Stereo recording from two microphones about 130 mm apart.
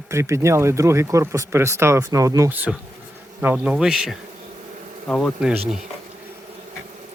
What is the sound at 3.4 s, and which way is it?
Speech, 10° right (ahead or behind).